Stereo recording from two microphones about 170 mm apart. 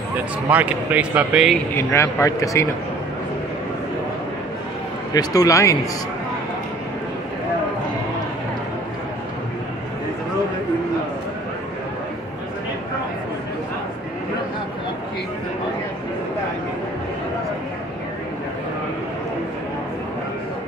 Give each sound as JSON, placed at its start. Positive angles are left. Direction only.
{"t": 0.5, "sound": "speech", "side_deg": -10}
{"t": 1.8, "sound": "a man's voice", "side_deg": 15}
{"t": 5.1, "sound": "a man's voice", "side_deg": 20}